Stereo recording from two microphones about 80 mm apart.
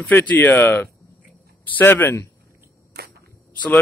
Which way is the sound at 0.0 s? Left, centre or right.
Left.